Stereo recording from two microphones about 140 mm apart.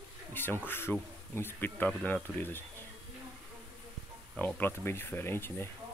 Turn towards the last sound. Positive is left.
turn(degrees=15)  # may be behind; listen again after turning